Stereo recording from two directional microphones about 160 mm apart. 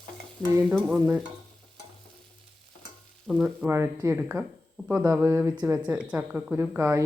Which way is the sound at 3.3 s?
Centre (ahead or behind).